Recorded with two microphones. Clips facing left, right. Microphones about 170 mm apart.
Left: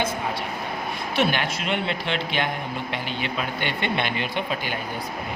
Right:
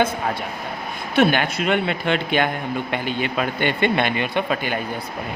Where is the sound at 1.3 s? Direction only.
50° right (ahead or behind).